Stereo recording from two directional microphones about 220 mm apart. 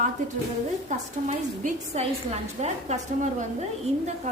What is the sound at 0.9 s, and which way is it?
A woman's voice, 35° right (ahead or behind).